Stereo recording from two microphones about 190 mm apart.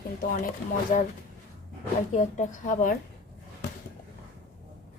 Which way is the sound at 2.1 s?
40° left (ahead or behind).